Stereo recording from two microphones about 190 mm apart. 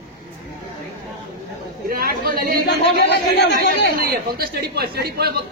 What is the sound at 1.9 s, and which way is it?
Chatter, 50° right (ahead or behind).